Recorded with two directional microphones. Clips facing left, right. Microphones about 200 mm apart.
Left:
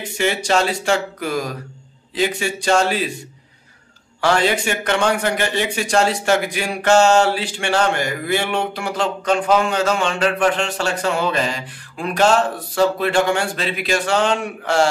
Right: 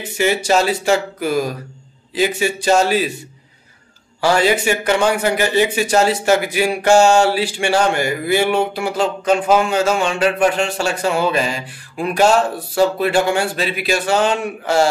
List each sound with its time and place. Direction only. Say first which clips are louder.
0.0 s speech: right 3 dB; 5° right (ahead or behind)
4.2 s a man's voice: right 2 dB; 5° right (ahead or behind)